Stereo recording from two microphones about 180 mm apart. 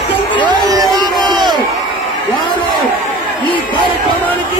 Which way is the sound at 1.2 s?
25° right (ahead or behind).